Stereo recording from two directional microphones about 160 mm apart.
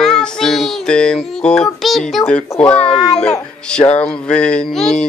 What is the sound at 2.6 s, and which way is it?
Speech, 10° left (ahead or behind).